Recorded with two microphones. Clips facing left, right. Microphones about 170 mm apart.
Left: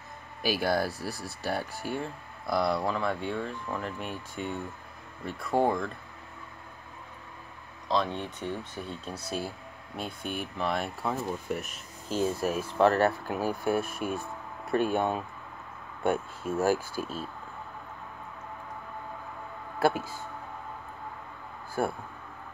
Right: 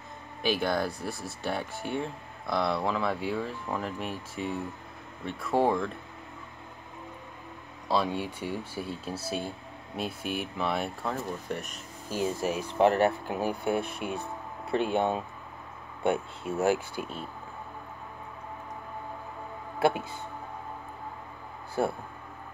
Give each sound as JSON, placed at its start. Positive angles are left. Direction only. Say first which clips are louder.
{"t": 0.4, "sound": "speech", "louder": "even", "side_deg": 5}
{"t": 7.9, "sound": "speech", "louder": "right 1 dB", "side_deg": -5}
{"t": 12.1, "sound": "speech", "louder": "left 1 dB", "side_deg": -15}
{"t": 19.8, "sound": "speech", "louder": "even", "side_deg": -20}